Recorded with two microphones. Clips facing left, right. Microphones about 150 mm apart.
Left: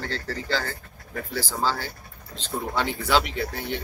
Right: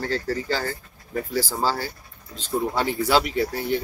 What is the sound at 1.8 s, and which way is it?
Speech, 40° right (ahead or behind).